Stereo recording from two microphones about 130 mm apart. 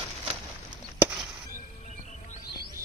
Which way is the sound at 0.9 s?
5° right (ahead or behind).